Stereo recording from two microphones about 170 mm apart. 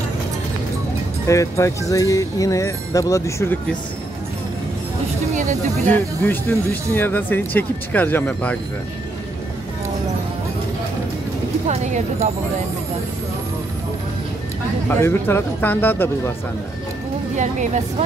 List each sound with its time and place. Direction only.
1.2 s speech: 20° left (ahead or behind)
5.3 s speech: 45° right (ahead or behind)
6.2 s speech: 10° left (ahead or behind)
11.6 s speech: 40° right (ahead or behind)
14.9 s speech: 15° left (ahead or behind)
17.4 s speech: 45° right (ahead or behind)